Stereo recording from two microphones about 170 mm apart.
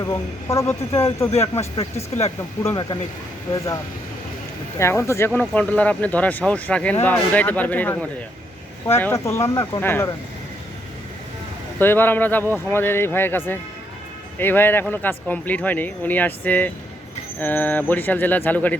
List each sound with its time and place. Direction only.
0.0 s speech: 20° left (ahead or behind)
1.7 s speech: 35° left (ahead or behind)
2.6 s speech: 25° left (ahead or behind)
4.8 s speech: 15° left (ahead or behind)
9.0 s speech: 15° left (ahead or behind)
11.8 s speech: 10° left (ahead or behind)